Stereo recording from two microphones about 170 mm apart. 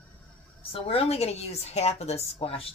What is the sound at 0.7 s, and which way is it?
A woman's voice, 35° left (ahead or behind).